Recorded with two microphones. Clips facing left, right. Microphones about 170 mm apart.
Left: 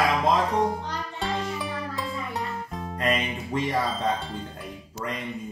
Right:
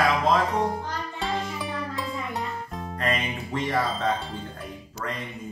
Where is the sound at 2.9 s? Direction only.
15° left (ahead or behind).